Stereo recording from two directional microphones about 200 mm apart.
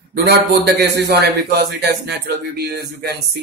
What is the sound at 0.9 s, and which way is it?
Speech, 55° right (ahead or behind).